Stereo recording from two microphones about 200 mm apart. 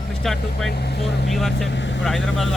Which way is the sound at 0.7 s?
55° left (ahead or behind).